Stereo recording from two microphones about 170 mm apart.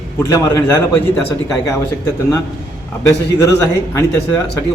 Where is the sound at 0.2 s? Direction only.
20° left (ahead or behind).